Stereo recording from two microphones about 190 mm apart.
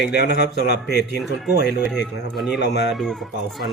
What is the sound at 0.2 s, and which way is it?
Speech, 60° left (ahead or behind).